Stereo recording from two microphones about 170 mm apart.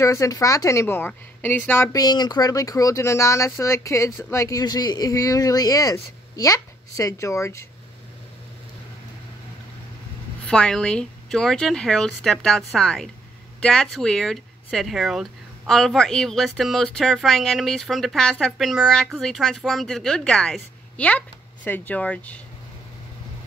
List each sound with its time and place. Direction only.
0.0 s a woman's voice: 20° left (ahead or behind)
10.5 s speech: 5° left (ahead or behind)